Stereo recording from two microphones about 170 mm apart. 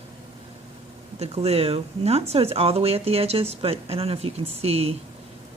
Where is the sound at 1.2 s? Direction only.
40° right (ahead or behind).